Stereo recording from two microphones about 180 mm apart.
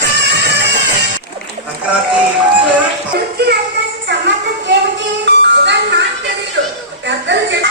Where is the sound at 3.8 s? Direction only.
75° right (ahead or behind).